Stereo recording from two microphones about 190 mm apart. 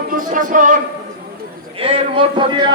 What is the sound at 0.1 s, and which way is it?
Speech, 45° right (ahead or behind).